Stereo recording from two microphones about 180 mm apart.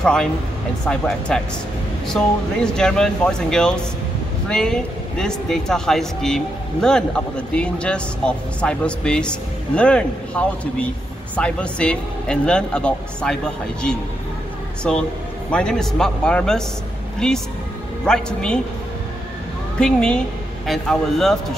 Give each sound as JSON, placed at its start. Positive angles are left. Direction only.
{"t": 0.0, "sound": "speech", "side_deg": 5}
{"t": 14.8, "sound": "speech", "side_deg": 5}
{"t": 19.8, "sound": "speech", "side_deg": 5}